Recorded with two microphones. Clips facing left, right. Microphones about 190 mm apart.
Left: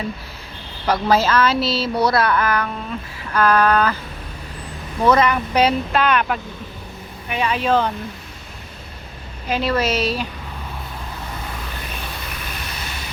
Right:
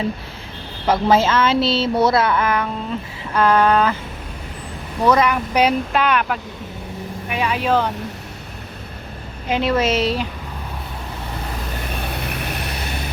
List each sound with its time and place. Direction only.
0.9 s speech: 20° right (ahead or behind)
5.0 s speech: 10° right (ahead or behind)
9.5 s speech: 20° right (ahead or behind)
11.9 s vehicle: 60° right (ahead or behind)